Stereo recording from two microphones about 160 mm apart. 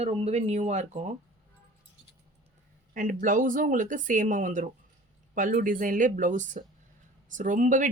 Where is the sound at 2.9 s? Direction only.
55° right (ahead or behind).